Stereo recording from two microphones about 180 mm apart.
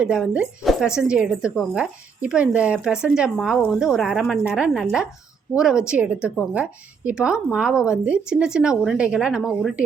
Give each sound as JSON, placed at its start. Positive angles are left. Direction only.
{"t": 0.0, "sound": "speech", "side_deg": -5}